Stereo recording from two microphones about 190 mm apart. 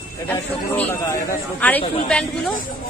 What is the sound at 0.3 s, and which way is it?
A woman's voice, 10° left (ahead or behind).